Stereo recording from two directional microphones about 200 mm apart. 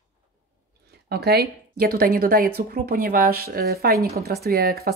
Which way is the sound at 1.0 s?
50° right (ahead or behind).